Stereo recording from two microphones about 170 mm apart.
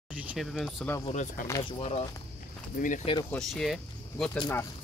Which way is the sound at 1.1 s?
50° left (ahead or behind).